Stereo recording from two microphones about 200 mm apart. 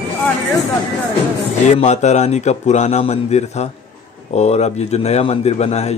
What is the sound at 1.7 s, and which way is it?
A man's voice, 35° left (ahead or behind).